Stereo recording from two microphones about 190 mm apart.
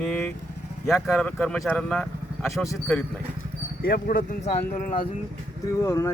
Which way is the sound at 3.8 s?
50° left (ahead or behind).